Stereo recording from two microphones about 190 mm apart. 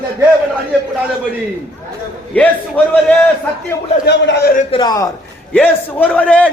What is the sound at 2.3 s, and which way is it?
Speech, 5° left (ahead or behind).